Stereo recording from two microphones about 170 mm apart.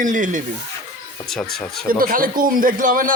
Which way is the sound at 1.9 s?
55° right (ahead or behind).